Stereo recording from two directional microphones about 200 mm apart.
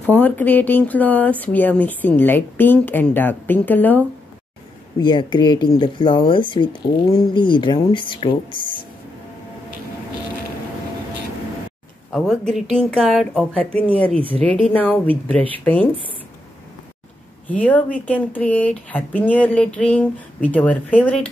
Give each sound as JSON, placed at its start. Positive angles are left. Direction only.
{"t": 0.0, "sound": "speech", "side_deg": 10}
{"t": 4.9, "sound": "speech", "side_deg": 20}
{"t": 12.1, "sound": "speech", "side_deg": 0}
{"t": 17.5, "sound": "speech", "side_deg": 5}